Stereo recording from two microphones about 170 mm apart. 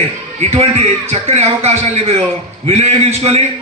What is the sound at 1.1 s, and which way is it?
A man's voice, 40° right (ahead or behind).